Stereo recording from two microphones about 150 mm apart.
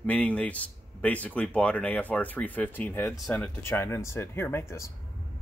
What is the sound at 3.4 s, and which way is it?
Speech, 20° left (ahead or behind).